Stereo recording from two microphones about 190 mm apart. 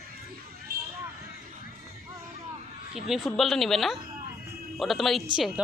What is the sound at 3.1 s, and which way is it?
Speech, centre (ahead or behind).